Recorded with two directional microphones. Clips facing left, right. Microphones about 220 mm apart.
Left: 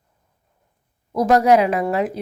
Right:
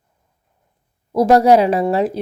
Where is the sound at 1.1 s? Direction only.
30° right (ahead or behind).